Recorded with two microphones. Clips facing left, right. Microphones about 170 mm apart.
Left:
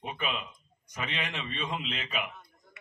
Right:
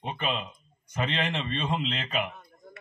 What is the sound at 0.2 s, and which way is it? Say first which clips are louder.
A man's voice: right 4 dB; 35° right (ahead or behind).